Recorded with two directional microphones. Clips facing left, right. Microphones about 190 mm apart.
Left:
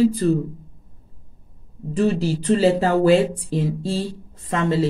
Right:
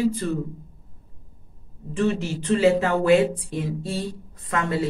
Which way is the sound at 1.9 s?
35° left (ahead or behind).